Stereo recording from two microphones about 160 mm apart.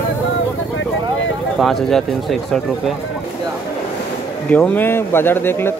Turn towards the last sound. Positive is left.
turn(degrees=15)  # may be behind; listen again after turning